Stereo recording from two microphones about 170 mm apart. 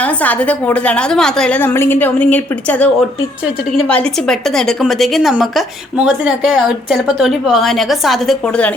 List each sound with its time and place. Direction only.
0.0 s a woman's voice: 10° left (ahead or behind)